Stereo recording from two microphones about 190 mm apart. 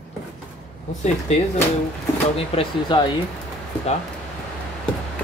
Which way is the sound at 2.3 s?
30° left (ahead or behind).